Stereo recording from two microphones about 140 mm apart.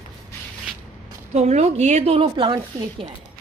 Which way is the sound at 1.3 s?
50° right (ahead or behind).